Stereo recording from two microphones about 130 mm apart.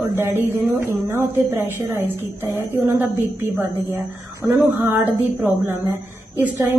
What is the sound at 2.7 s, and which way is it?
Speech, 20° right (ahead or behind).